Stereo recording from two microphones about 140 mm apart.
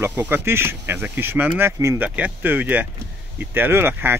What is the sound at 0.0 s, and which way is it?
Speech, 15° right (ahead or behind).